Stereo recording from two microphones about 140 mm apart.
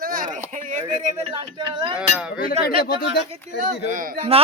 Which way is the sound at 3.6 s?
70° right (ahead or behind).